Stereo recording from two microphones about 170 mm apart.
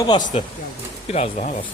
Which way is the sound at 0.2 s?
45° left (ahead or behind).